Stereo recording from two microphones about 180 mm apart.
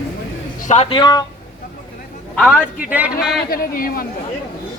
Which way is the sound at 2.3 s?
5° left (ahead or behind).